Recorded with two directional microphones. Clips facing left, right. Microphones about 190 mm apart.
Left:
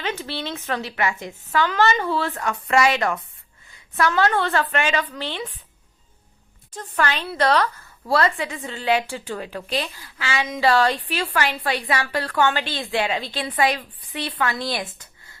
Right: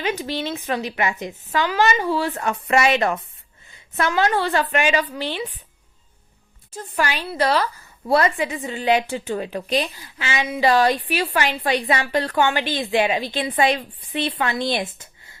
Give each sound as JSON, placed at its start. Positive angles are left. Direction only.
{"t": 0.0, "sound": "a woman's voice", "side_deg": -15}
{"t": 4.1, "sound": "a woman's voice", "side_deg": -10}
{"t": 6.7, "sound": "a woman's voice", "side_deg": -10}
{"t": 8.0, "sound": "speech", "side_deg": -20}